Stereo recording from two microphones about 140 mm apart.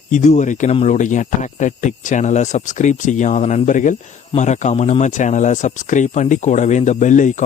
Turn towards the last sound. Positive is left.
turn(degrees=60)  # may be behind; listen again after turning